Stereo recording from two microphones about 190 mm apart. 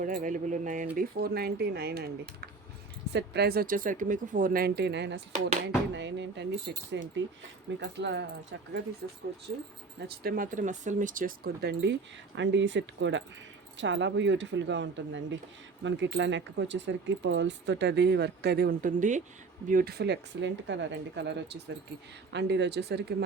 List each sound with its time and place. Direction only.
0.0 s speech: 45° right (ahead or behind)
0.9 s speech: 55° right (ahead or behind)
10.2 s speech: 45° right (ahead or behind)